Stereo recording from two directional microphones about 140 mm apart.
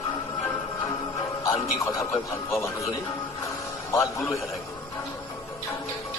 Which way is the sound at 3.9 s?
20° left (ahead or behind).